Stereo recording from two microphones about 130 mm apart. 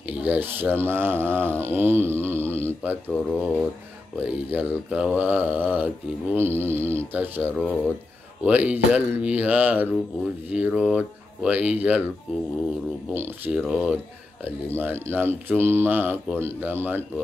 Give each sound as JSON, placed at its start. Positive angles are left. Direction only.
{"t": 0.1, "sound": "speech", "side_deg": -15}
{"t": 13.1, "sound": "speech", "side_deg": -15}